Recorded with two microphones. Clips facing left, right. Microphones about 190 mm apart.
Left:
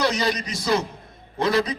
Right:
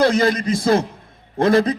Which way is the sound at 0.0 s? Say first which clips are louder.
Right 7 dB; 50° right (ahead or behind).